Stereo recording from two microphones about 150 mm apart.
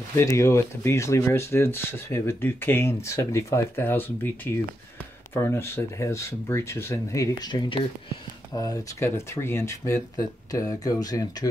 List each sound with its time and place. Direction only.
0.2 s speech: 20° left (ahead or behind)